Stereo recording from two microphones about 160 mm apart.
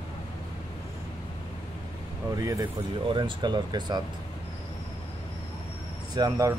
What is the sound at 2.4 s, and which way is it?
Speech, 20° right (ahead or behind).